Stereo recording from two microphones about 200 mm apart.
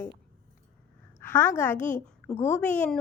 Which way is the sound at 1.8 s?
40° left (ahead or behind).